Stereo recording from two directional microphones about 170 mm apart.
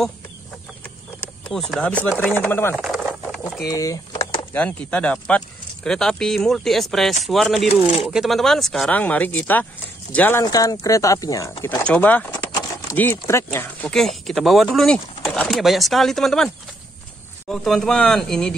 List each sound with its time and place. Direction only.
1.5 s speech: centre (ahead or behind)
2.7 s a sound: centre (ahead or behind)
3.6 s a sound: 20° left (ahead or behind)
4.6 s speech: 5° left (ahead or behind)
10.4 s speech: 20° left (ahead or behind)
13.9 s speech: centre (ahead or behind)
17.5 s speech: 5° left (ahead or behind)